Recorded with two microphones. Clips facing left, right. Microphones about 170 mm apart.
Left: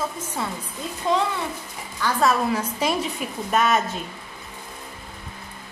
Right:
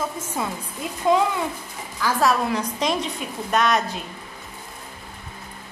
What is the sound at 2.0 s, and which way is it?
A woman's voice, centre (ahead or behind).